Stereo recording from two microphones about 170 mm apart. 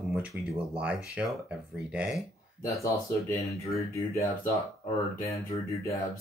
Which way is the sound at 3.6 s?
15° left (ahead or behind).